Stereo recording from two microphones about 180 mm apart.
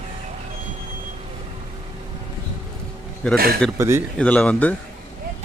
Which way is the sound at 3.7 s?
15° right (ahead or behind).